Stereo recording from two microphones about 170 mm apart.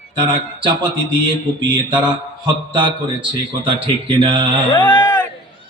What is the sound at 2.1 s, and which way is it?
A man's voice, 25° right (ahead or behind).